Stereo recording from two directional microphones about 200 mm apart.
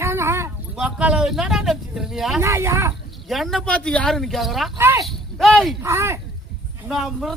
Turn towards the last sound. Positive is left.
turn(degrees=0)  # may be behind; listen again after turning